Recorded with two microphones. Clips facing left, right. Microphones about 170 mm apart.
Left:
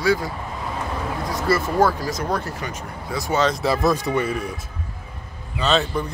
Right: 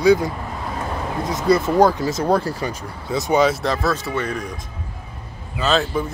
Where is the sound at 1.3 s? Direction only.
20° right (ahead or behind).